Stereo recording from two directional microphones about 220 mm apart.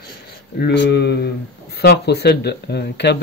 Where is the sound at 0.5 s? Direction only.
50° left (ahead or behind).